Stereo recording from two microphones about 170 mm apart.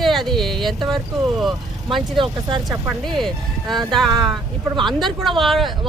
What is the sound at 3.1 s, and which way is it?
Speech, centre (ahead or behind).